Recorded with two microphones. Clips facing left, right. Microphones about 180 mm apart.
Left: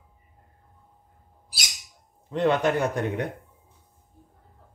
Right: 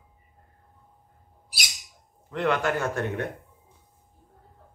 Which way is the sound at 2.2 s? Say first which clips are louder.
Left 3 dB; 20° left (ahead or behind).